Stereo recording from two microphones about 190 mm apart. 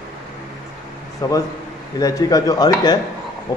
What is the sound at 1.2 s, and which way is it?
A man's voice, 20° left (ahead or behind).